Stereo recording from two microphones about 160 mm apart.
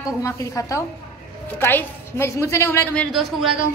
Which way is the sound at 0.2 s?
20° left (ahead or behind).